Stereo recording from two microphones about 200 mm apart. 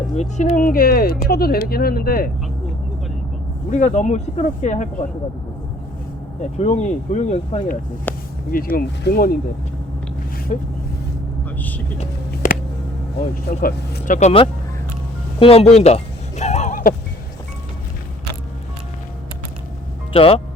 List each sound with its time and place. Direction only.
0.2 s speech: 35° left (ahead or behind)
3.7 s speech: 35° left (ahead or behind)
6.4 s speech: 35° left (ahead or behind)
8.1 s a sound: 10° left (ahead or behind)
8.4 s speech: 45° left (ahead or behind)
10.5 s speech: 35° left (ahead or behind)
13.1 s speech: 45° left (ahead or behind); by 16.0 s 30° left (ahead or behind)
16.4 s a sound: 35° left (ahead or behind)
20.1 s speech: 30° left (ahead or behind)